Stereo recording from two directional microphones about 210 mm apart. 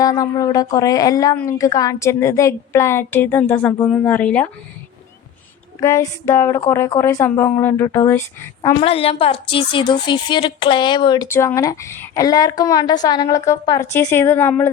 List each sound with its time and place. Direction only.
0.0 s speech: 15° left (ahead or behind)
5.8 s speech: 15° left (ahead or behind)
8.8 s speech: 25° left (ahead or behind); by 14.7 s 10° left (ahead or behind)